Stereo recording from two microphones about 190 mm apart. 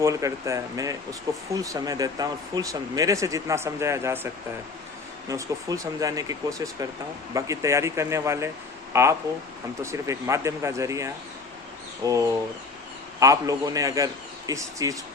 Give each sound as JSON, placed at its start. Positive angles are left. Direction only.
{"t": 0.0, "sound": "speech", "side_deg": -15}
{"t": 5.3, "sound": "speech", "side_deg": -15}
{"t": 7.3, "sound": "speech", "side_deg": -15}